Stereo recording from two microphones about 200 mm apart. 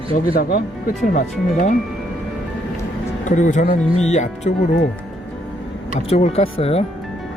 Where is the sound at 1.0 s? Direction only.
40° left (ahead or behind).